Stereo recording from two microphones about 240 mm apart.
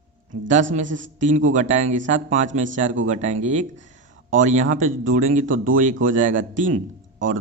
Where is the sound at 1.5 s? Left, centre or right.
Right.